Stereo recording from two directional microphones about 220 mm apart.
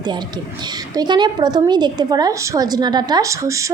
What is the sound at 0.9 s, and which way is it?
A woman's voice, 20° right (ahead or behind).